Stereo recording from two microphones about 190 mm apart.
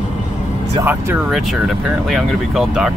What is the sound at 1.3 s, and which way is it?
Speech, centre (ahead or behind).